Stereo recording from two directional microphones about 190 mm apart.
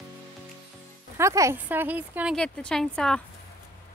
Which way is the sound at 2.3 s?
5° left (ahead or behind).